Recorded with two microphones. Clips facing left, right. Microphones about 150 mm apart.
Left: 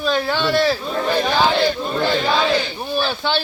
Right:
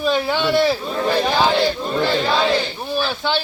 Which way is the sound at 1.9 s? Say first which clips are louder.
Even; centre (ahead or behind).